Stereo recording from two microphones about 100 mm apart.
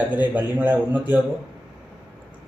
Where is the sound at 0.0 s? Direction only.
15° right (ahead or behind).